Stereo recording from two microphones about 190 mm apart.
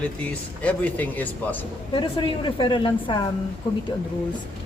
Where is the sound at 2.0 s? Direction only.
25° left (ahead or behind).